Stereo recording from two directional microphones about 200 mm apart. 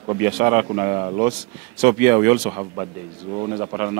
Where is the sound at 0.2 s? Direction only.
15° right (ahead or behind).